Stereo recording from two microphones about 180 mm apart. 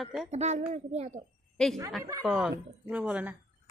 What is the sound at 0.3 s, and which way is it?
Speech, 40° right (ahead or behind).